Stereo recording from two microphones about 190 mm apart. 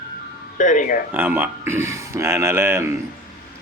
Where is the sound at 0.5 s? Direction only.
40° left (ahead or behind).